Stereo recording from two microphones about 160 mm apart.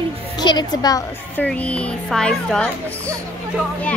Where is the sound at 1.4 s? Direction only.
10° left (ahead or behind).